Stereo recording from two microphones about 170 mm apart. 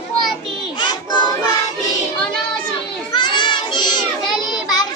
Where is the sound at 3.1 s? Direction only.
25° left (ahead or behind).